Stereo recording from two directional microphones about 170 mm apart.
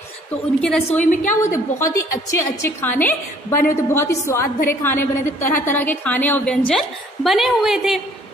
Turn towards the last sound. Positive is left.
turn(degrees=0)  # may be behind; listen again after turning